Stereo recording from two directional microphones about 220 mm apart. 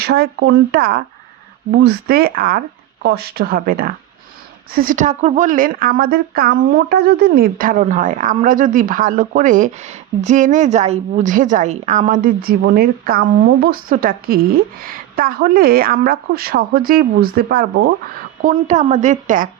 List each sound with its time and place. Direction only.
0.0 s a woman's voice: 45° right (ahead or behind)
18.4 s speech: 30° right (ahead or behind)